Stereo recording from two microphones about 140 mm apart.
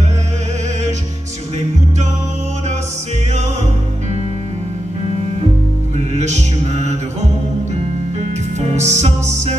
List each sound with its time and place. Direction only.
6.1 s music: 55° right (ahead or behind)
8.2 s music: 55° right (ahead or behind)